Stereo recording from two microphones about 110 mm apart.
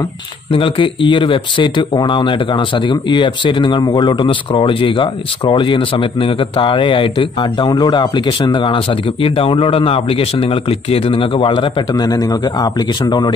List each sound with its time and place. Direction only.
0.5 s speech: 50° left (ahead or behind)
11.9 s speech: 35° left (ahead or behind)